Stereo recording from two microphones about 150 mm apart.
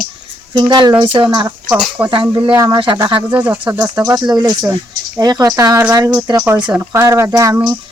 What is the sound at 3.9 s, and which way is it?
Speech, 25° right (ahead or behind).